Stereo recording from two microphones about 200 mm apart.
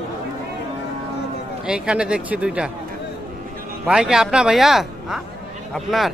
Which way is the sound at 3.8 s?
5° right (ahead or behind).